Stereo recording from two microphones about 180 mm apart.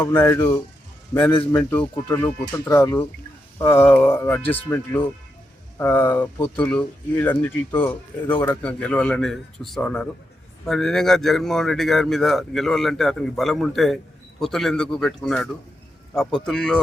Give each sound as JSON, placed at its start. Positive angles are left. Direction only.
{"t": 0.0, "sound": "speech", "side_deg": 10}